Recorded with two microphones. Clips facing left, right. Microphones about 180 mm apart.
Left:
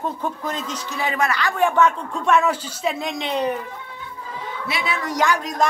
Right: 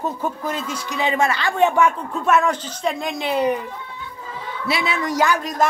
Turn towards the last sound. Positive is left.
turn(degrees=0)  # may be behind; listen again after turning